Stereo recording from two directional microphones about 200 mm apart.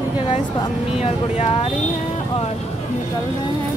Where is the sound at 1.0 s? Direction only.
30° left (ahead or behind).